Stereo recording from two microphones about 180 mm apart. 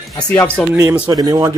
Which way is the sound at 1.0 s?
20° right (ahead or behind).